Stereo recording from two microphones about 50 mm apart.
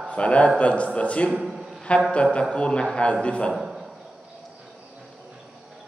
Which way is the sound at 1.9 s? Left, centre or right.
Left.